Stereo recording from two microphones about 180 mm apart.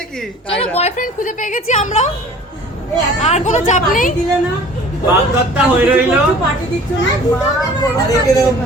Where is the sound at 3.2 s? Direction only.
40° left (ahead or behind).